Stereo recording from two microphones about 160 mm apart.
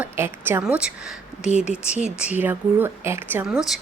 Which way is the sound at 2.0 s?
10° right (ahead or behind).